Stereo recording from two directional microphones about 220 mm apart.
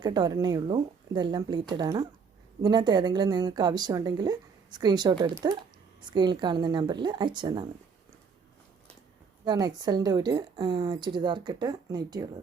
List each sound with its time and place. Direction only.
0.0 s speech: 20° right (ahead or behind)
9.4 s speech: 20° right (ahead or behind)